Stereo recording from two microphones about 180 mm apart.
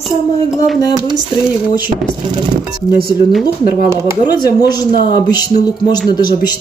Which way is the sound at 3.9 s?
15° right (ahead or behind).